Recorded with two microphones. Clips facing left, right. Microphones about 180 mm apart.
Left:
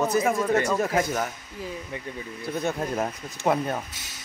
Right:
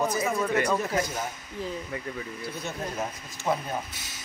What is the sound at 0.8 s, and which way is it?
Speech, 75° left (ahead or behind).